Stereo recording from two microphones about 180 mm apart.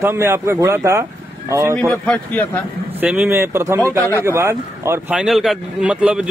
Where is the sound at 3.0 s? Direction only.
5° right (ahead or behind).